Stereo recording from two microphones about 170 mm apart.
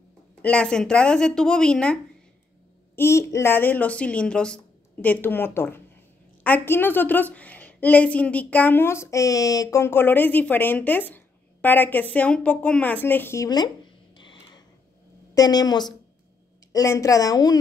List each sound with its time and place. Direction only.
0.4 s speech: 5° left (ahead or behind)
3.0 s a woman's voice: 15° left (ahead or behind)
14.1 s a sound: 30° left (ahead or behind)
15.3 s a woman's voice: 25° left (ahead or behind)